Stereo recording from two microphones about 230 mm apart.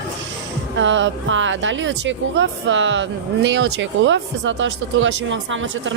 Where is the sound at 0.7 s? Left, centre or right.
Right.